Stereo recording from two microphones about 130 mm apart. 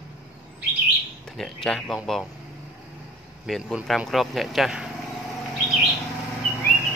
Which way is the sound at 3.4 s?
Centre (ahead or behind).